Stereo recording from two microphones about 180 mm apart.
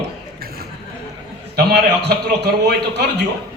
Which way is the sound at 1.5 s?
60° right (ahead or behind).